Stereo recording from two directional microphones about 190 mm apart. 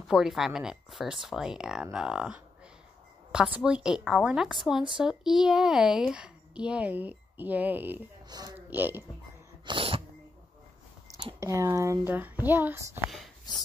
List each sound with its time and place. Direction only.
0.1 s speech: centre (ahead or behind)
3.5 s a child's voice: 5° right (ahead or behind)
9.7 s sneeze: 25° right (ahead or behind)
11.1 s a child's voice: 20° right (ahead or behind)
13.5 s speech: 20° left (ahead or behind)